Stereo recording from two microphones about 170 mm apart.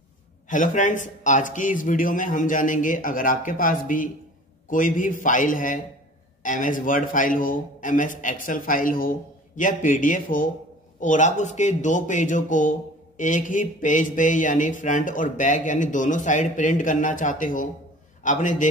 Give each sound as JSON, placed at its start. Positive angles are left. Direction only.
{"t": 0.5, "sound": "speech", "side_deg": 50}